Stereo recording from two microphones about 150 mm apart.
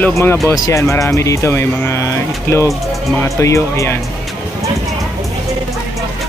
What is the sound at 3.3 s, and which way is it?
Speech, 20° left (ahead or behind).